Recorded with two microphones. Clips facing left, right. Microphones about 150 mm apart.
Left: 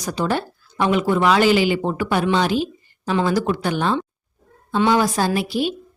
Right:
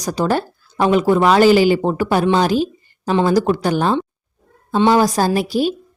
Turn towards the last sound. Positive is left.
turn(degrees=-40)  # may be behind; listen again after turning